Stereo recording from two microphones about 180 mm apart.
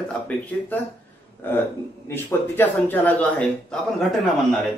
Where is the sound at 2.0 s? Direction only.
10° left (ahead or behind).